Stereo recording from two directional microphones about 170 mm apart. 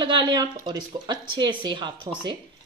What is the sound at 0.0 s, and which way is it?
Speech, 25° right (ahead or behind).